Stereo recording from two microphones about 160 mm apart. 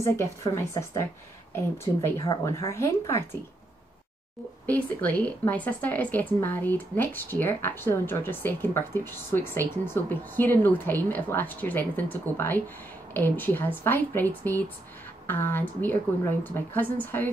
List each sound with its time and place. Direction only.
0.0 s a woman's voice: 20° left (ahead or behind)
4.6 s speech: 10° left (ahead or behind)